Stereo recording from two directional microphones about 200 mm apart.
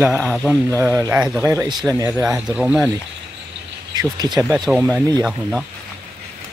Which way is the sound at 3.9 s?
20° right (ahead or behind).